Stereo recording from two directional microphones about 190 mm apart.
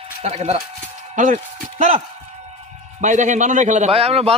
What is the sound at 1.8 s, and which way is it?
A man's voice, 35° right (ahead or behind).